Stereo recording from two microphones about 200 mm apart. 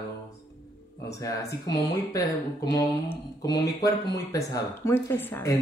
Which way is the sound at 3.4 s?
20° left (ahead or behind).